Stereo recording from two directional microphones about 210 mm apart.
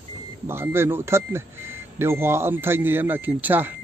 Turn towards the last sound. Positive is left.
turn(degrees=-10)  # may be behind; listen again after turning